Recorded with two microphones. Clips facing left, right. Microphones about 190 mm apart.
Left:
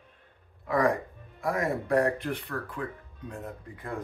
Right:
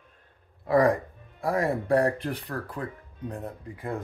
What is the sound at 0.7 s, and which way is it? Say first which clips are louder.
Speech: right 4 dB; 35° right (ahead or behind).